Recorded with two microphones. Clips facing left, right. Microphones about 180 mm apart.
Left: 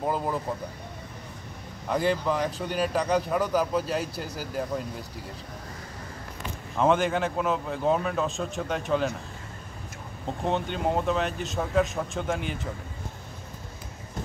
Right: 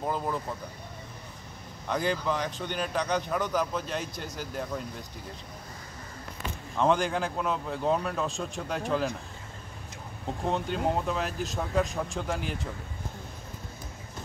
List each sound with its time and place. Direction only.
0.0 s speech: 10° left (ahead or behind)
1.9 s a man's voice: centre (ahead or behind)
6.8 s a man's voice: centre (ahead or behind)
10.4 s a man's voice: centre (ahead or behind)